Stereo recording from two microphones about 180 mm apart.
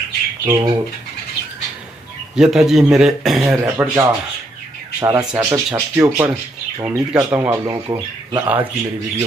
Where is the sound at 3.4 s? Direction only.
10° right (ahead or behind).